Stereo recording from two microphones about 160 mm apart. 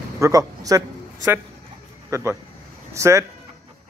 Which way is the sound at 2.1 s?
15° right (ahead or behind).